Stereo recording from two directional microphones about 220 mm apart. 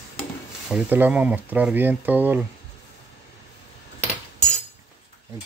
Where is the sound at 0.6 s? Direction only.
5° right (ahead or behind).